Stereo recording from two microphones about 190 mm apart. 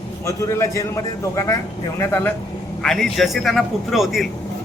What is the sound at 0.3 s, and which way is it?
A man's voice, 15° left (ahead or behind).